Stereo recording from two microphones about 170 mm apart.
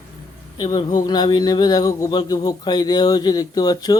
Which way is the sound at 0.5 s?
25° left (ahead or behind).